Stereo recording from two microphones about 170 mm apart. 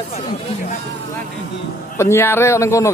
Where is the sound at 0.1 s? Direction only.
40° left (ahead or behind).